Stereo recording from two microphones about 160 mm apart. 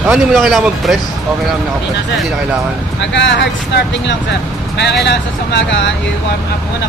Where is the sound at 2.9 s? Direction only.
90° left.